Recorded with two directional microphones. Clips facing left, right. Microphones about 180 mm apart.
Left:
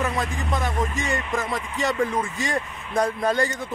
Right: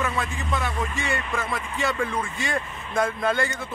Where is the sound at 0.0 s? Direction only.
35° left (ahead or behind).